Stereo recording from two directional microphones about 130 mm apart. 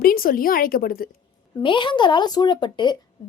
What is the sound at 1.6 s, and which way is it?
A woman's voice, 40° left (ahead or behind).